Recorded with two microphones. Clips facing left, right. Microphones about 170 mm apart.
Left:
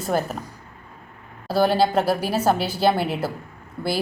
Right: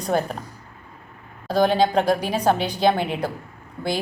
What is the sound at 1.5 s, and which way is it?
A woman's voice, 5° left (ahead or behind).